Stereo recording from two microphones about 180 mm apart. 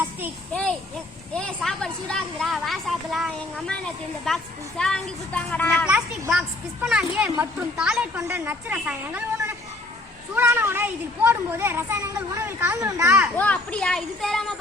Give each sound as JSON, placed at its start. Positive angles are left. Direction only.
{"t": 0.5, "sound": "a woman's voice", "side_deg": 5}
{"t": 5.8, "sound": "a woman's voice", "side_deg": -5}
{"t": 10.3, "sound": "a child's voice", "side_deg": -15}
{"t": 13.3, "sound": "a woman's voice", "side_deg": 5}